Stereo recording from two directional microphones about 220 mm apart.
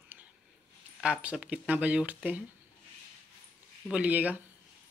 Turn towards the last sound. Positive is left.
turn(degrees=-5)  # may be behind; listen again after turning